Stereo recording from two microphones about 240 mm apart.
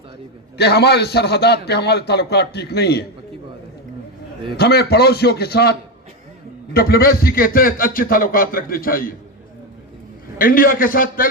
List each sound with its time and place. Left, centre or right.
0.5 s a man's voice: left
4.5 s a man's voice: left
6.7 s a man's voice: left
10.3 s a man's voice: left